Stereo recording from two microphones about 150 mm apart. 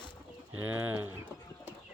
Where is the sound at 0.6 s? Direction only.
10° right (ahead or behind).